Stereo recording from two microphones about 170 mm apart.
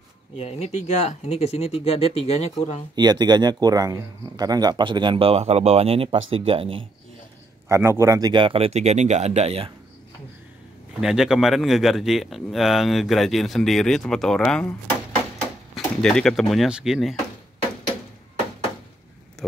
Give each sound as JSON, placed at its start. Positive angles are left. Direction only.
{"t": 0.4, "sound": "speech", "side_deg": 40}
{"t": 3.0, "sound": "speech", "side_deg": -25}
{"t": 7.6, "sound": "speech", "side_deg": -15}
{"t": 11.0, "sound": "a man's voice", "side_deg": -5}